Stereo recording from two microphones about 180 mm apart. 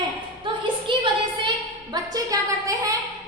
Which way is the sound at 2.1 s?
20° right (ahead or behind).